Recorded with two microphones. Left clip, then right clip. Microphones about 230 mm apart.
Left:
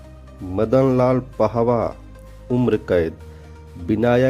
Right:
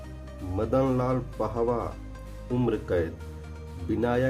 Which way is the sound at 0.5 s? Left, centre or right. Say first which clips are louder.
Left 9 dB; left.